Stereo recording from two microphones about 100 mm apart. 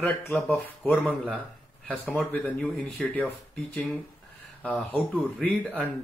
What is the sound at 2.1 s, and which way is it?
Speech, 15° left (ahead or behind).